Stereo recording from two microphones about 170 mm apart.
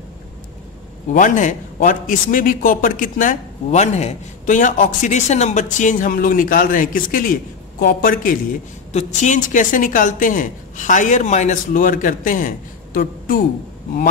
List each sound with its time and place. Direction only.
1.1 s a man's voice: 45° left (ahead or behind)
8.9 s a man's voice: 45° left (ahead or behind)